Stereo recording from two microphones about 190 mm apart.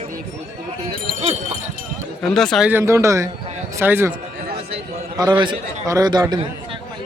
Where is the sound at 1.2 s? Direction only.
35° right (ahead or behind).